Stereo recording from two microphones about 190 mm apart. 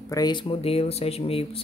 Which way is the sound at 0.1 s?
20° left (ahead or behind).